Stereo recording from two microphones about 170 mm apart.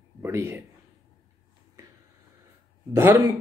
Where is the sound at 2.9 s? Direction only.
15° right (ahead or behind).